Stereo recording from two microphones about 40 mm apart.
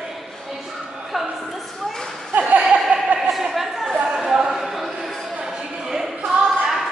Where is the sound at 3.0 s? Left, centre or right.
Right.